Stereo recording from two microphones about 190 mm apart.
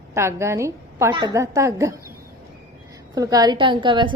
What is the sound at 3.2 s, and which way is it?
Speech, 20° right (ahead or behind).